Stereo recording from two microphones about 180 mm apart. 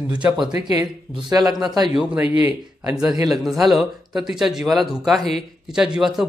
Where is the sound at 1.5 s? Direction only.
Centre (ahead or behind).